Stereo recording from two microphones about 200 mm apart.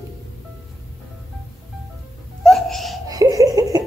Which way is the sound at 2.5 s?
Centre (ahead or behind).